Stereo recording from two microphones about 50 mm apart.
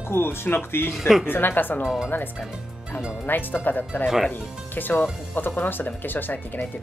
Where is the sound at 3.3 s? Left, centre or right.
Left.